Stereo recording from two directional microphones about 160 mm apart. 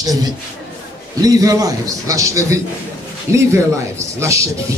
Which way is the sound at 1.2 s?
20° right (ahead or behind).